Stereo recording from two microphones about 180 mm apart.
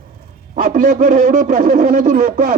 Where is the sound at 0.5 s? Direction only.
50° right (ahead or behind).